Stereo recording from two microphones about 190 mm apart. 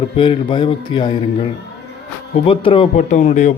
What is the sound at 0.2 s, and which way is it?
A man's voice, 25° left (ahead or behind).